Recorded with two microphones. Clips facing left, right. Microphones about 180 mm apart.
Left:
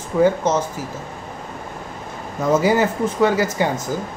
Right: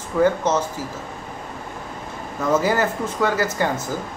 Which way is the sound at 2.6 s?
15° left (ahead or behind).